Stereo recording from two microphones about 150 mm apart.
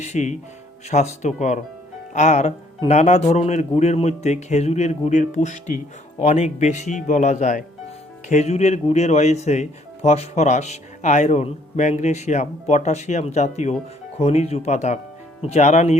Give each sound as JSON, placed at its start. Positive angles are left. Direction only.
{"t": 0.0, "sound": "speech", "side_deg": 50}